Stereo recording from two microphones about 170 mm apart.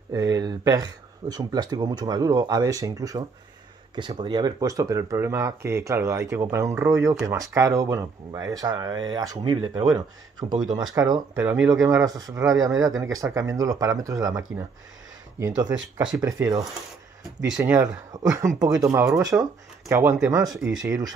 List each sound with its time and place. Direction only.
0.1 s speech: 20° right (ahead or behind)
17.2 s speech: 5° right (ahead or behind)
17.6 s speech: 20° right (ahead or behind)